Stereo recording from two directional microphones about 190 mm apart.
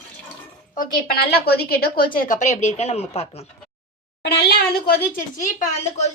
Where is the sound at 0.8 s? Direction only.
50° left (ahead or behind); by 3.4 s 35° left (ahead or behind).